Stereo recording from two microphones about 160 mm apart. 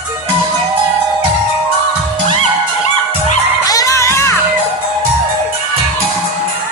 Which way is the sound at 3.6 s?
20° left (ahead or behind).